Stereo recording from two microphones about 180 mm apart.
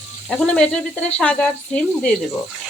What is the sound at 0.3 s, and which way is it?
Speech, 5° left (ahead or behind).